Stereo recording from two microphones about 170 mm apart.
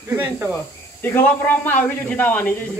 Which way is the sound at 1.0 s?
10° left (ahead or behind).